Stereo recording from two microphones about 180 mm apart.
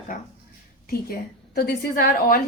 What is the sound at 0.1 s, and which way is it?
A woman's voice, 50° left (ahead or behind).